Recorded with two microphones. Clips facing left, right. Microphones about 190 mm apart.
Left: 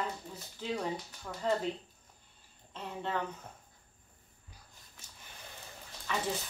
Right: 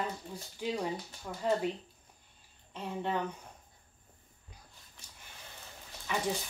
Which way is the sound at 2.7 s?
15° right (ahead or behind).